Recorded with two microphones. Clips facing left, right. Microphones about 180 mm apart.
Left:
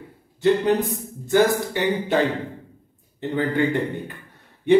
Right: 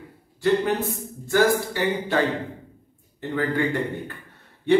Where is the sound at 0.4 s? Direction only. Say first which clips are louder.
Left 3 dB; 20° left (ahead or behind).